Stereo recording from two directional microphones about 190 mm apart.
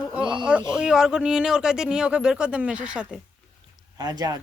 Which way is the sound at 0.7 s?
5° right (ahead or behind).